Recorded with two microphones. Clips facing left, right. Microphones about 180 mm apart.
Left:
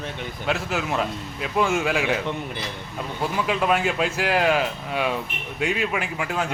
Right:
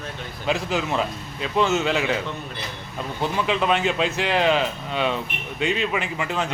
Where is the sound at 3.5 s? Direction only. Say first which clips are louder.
Even; 5° left (ahead or behind).